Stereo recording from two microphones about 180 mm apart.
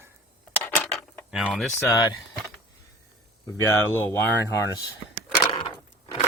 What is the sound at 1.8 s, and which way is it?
Speech, 20° left (ahead or behind).